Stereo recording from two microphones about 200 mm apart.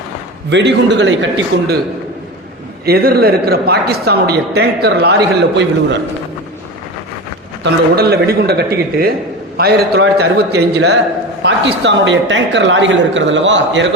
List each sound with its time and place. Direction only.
0.5 s a woman's voice: 60° right (ahead or behind)
2.8 s a man's voice: 50° right (ahead or behind)
7.6 s a man's voice: 50° right (ahead or behind)